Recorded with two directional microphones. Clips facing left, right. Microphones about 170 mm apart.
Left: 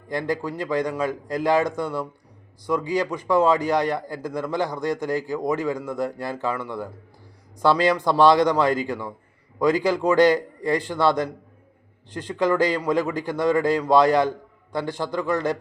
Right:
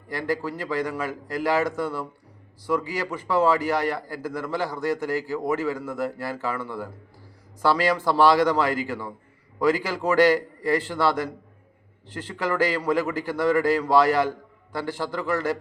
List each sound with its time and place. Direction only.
0.1 s a man's voice: 20° left (ahead or behind)
7.6 s a man's voice: 20° left (ahead or behind)